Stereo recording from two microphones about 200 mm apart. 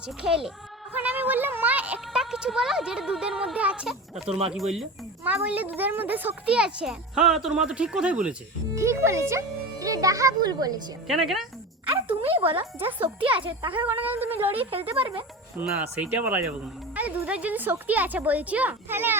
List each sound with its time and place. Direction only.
0.2 s a child's voice: 5° right (ahead or behind); by 10.8 s 20° right (ahead or behind)
11.1 s speech: centre (ahead or behind)
12.5 s a child's voice: 10° right (ahead or behind)
13.3 s speech: 25° right (ahead or behind)
13.8 s a child's voice: 10° right (ahead or behind)
14.6 s speech: 30° right (ahead or behind)
15.5 s a child's voice: 5° right (ahead or behind)